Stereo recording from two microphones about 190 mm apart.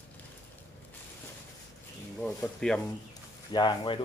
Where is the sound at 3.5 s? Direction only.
20° left (ahead or behind).